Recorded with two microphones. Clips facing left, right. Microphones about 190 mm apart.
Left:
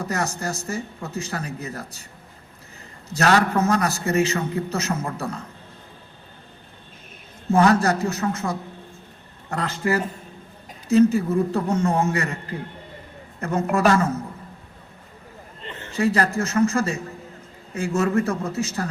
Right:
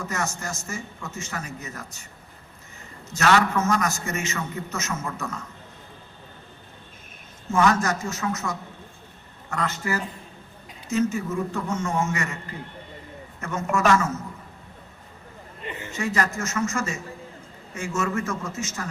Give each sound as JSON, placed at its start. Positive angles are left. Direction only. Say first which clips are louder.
{"t": 0.0, "sound": "a man's voice", "louder": "left 4 dB", "side_deg": 35}
{"t": 3.1, "sound": "a man's voice", "louder": "left 2 dB", "side_deg": 35}
{"t": 7.4, "sound": "a man's voice", "louder": "left 4 dB", "side_deg": 35}
{"t": 13.4, "sound": "a man's voice", "louder": "left 4 dB", "side_deg": 35}
{"t": 15.6, "sound": "a sound", "louder": "right 3 dB", "side_deg": -10}
{"t": 15.9, "sound": "a man's voice", "louder": "left 6 dB", "side_deg": 35}